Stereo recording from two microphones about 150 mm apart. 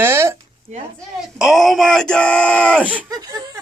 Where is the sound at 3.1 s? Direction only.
25° right (ahead or behind).